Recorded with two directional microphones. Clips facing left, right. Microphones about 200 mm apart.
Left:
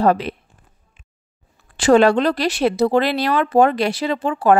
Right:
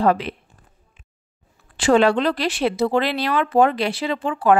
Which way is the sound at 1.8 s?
45° left (ahead or behind).